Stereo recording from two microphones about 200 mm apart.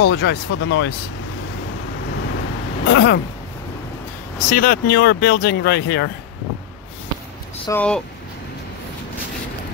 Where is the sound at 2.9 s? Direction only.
60° left (ahead or behind).